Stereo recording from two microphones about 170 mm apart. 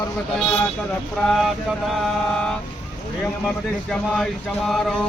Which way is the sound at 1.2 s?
Centre (ahead or behind).